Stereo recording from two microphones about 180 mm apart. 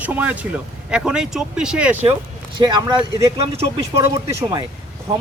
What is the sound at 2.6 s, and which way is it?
Speech, 25° right (ahead or behind).